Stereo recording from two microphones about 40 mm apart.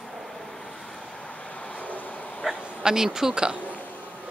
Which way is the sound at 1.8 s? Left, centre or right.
Left.